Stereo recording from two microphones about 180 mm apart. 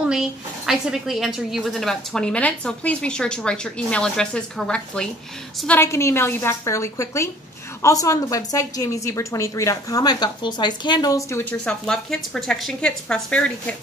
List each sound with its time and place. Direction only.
0.7 s a woman's voice: centre (ahead or behind)